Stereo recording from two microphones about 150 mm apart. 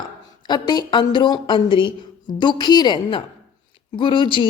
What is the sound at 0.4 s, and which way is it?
A woman's voice, 30° left (ahead or behind).